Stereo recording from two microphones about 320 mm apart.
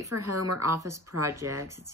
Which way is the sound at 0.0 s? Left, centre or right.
Right.